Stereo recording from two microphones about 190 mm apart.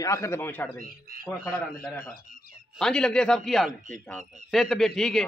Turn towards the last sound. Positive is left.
turn(degrees=5)  # may be behind; listen again after turning